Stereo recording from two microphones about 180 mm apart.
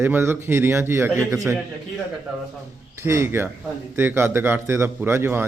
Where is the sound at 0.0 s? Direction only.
15° right (ahead or behind).